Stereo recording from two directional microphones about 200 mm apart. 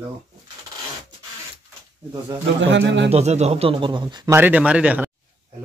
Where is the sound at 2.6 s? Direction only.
65° right (ahead or behind).